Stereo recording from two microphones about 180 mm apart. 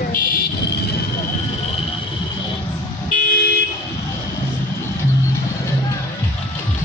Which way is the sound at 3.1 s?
60° left (ahead or behind).